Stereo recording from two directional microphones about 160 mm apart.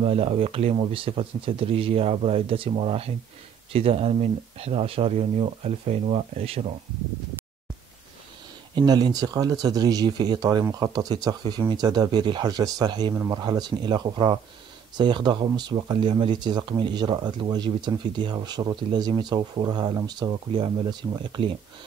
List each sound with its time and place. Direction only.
0.0 s speech: 35° right (ahead or behind)
8.7 s speech: 25° right (ahead or behind)